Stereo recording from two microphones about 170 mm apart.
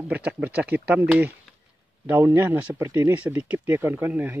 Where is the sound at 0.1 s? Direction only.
10° right (ahead or behind).